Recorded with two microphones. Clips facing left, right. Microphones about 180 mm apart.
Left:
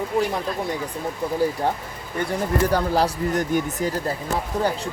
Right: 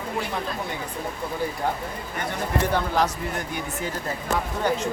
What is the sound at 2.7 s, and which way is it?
Speech, 35° left (ahead or behind).